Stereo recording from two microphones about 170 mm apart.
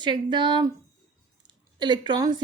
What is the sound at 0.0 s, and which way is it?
Speech, 25° right (ahead or behind).